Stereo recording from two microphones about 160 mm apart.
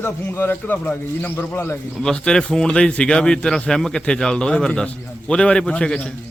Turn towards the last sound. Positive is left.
turn(degrees=5)  # may be behind; listen again after turning